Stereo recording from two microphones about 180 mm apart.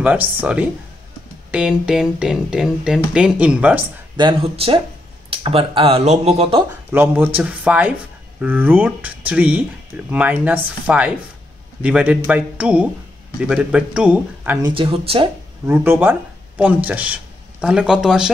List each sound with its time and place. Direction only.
0.0 s speech: 10° right (ahead or behind)
4.2 s speech: 30° right (ahead or behind)
6.9 s speech: 10° right (ahead or behind)
14.6 s speech: 30° right (ahead or behind)
15.6 s speech: 10° right (ahead or behind)